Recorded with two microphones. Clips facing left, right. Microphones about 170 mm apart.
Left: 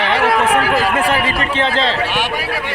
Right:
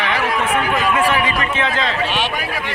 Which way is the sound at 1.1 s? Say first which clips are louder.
Left 1 dB; 30° left (ahead or behind).